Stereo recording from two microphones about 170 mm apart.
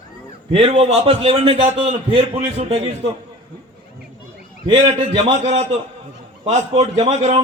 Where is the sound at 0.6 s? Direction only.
35° right (ahead or behind).